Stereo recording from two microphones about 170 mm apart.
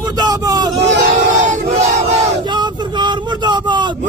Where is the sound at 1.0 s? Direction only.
45° right (ahead or behind).